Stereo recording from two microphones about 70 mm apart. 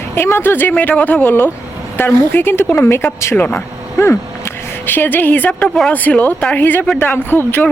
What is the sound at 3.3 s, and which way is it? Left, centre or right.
Speech, left.